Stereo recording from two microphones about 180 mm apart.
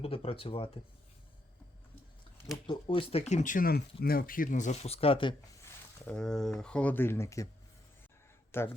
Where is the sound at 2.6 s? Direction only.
30° left (ahead or behind).